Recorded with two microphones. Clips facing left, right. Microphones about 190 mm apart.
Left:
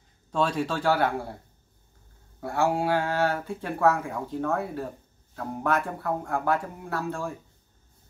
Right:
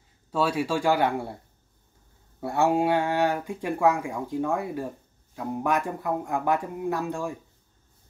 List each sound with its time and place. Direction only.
0.3 s speech: 5° right (ahead or behind)
2.4 s speech: 20° right (ahead or behind)